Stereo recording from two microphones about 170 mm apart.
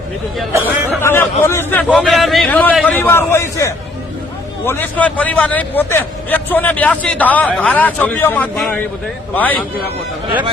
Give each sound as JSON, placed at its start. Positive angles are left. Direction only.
{"t": 1.0, "sound": "a man's voice", "side_deg": 15}